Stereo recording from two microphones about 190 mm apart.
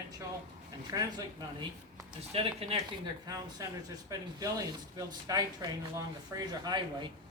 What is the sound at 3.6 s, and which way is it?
Speech, 15° right (ahead or behind).